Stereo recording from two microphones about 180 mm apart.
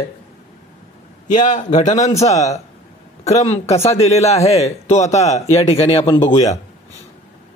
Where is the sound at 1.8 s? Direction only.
40° left (ahead or behind).